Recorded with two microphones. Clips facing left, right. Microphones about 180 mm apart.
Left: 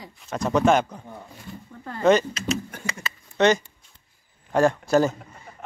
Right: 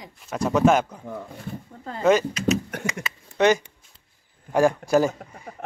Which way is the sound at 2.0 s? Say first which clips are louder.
Left 1 dB; 5° right (ahead or behind).